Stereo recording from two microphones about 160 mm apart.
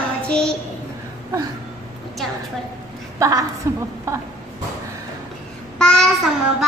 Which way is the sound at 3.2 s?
20° right (ahead or behind).